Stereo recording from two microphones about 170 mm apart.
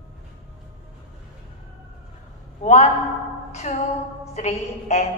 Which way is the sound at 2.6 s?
45° left (ahead or behind).